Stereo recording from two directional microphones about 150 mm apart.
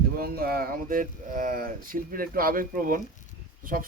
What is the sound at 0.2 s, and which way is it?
Speech, 90° right.